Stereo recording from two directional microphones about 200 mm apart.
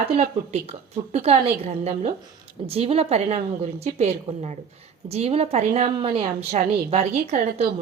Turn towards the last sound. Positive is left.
turn(degrees=-30)  # may be behind; listen again after turning